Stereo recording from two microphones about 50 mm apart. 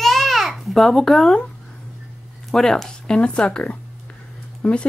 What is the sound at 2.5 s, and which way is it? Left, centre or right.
Speech, centre.